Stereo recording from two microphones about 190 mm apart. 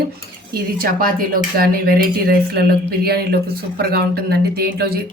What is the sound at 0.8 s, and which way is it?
Speech, 50° right (ahead or behind).